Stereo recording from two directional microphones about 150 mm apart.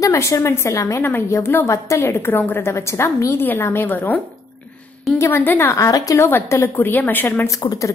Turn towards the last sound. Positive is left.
turn(degrees=25)  # may be behind; listen again after turning